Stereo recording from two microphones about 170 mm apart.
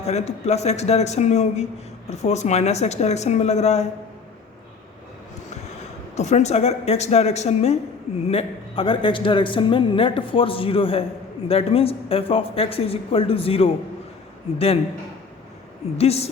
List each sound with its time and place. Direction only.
0.0 s a man's voice: 40° left (ahead or behind)
6.1 s a man's voice: 40° left (ahead or behind)
16.0 s a man's voice: 35° left (ahead or behind)